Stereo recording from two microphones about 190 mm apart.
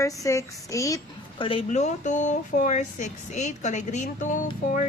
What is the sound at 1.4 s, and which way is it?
Speech, 30° left (ahead or behind).